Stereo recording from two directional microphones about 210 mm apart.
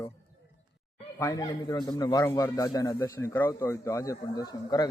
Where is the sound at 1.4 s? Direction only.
20° left (ahead or behind).